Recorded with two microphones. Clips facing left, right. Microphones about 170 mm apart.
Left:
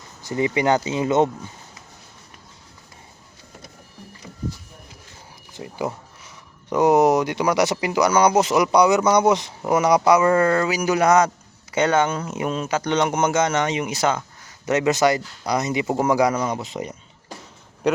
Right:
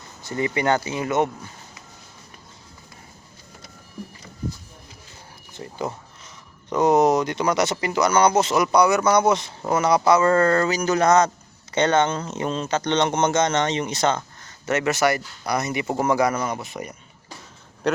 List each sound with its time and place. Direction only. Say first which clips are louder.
0.2 s speech: left 3 dB; 15° left (ahead or behind)
5.5 s speech: left 2 dB; 15° left (ahead or behind)
17.8 s speech: left 2 dB; 10° left (ahead or behind)